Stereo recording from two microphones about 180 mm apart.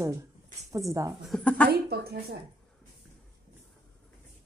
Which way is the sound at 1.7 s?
60° right (ahead or behind).